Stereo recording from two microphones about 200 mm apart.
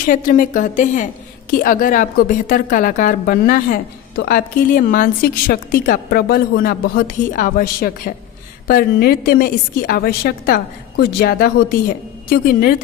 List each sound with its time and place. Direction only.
0.0 s a woman's voice: 45° left (ahead or behind)